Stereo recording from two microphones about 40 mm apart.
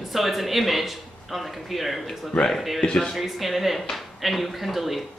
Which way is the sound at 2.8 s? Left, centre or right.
Left.